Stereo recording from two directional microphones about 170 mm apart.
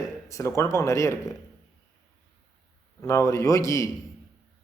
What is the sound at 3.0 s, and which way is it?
Speech, 15° left (ahead or behind).